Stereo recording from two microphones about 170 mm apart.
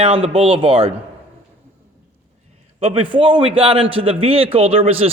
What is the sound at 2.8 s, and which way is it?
A man's voice, 30° right (ahead or behind).